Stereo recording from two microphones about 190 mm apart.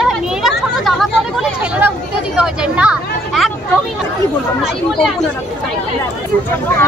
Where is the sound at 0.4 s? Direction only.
Centre (ahead or behind).